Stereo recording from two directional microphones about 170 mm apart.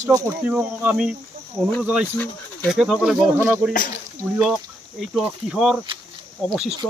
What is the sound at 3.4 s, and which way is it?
Speech, 15° right (ahead or behind).